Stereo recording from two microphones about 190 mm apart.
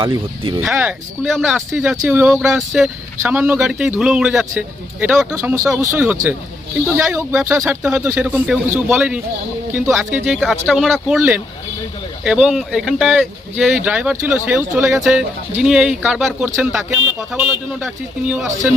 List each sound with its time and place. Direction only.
0.0 s speech: 25° right (ahead or behind)
0.6 s speech: 5° right (ahead or behind)
10.2 s speech: centre (ahead or behind)